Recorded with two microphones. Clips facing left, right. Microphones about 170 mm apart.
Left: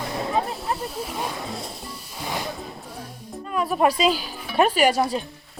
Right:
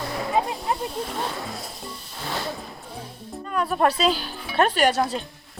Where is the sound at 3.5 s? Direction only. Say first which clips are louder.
Left 1 dB; 5° left (ahead or behind).